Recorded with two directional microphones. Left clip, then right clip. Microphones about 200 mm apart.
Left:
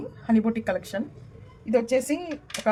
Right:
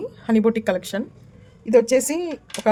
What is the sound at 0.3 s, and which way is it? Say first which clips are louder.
Speech: right 6 dB; 60° right (ahead or behind).